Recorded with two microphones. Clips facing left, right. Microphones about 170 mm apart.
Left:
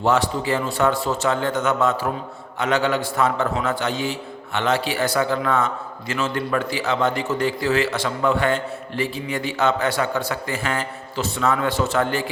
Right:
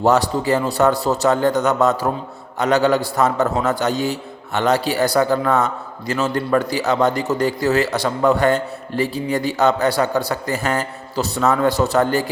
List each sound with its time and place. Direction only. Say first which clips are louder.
0.0 s a man's voice: right 4 dB; 40° right (ahead or behind)